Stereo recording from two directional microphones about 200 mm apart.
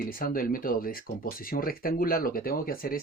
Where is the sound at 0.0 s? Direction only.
45° left (ahead or behind).